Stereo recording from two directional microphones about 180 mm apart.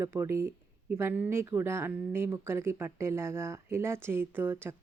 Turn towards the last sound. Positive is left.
turn(degrees=-15)  # may be behind; listen again after turning